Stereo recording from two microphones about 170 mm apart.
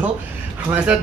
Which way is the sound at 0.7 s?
5° right (ahead or behind).